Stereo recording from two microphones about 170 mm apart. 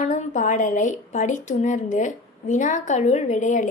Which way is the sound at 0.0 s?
45° left (ahead or behind).